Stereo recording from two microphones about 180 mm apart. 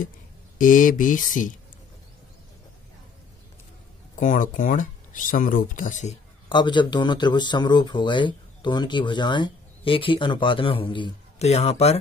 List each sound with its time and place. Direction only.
0.6 s speech: 45° left (ahead or behind)
4.2 s speech: 45° left (ahead or behind)
6.5 s speech: 25° left (ahead or behind)